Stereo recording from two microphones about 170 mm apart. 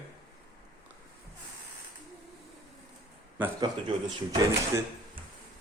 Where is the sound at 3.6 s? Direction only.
25° right (ahead or behind).